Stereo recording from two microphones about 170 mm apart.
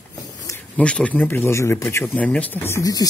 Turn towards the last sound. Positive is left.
turn(degrees=20)  # may be behind; listen again after turning